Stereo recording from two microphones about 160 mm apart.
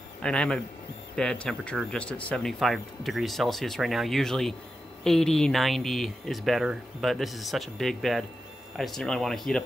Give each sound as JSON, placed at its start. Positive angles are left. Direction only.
{"t": 0.2, "sound": "speech", "side_deg": 5}